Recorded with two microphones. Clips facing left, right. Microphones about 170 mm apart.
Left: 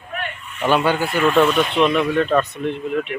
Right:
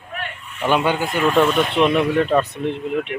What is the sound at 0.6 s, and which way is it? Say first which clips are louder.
Speech: left 1 dB; 15° right (ahead or behind).